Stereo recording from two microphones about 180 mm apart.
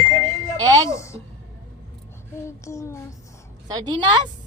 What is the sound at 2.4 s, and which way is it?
Child singing, 15° left (ahead or behind).